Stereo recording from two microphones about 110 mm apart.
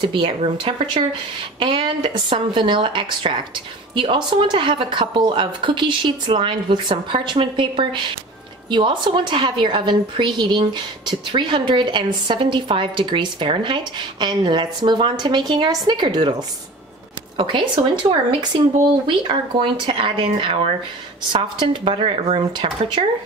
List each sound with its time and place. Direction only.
0.0 s a woman's voice: 50° right (ahead or behind)
19.0 s a woman's voice: 50° right (ahead or behind)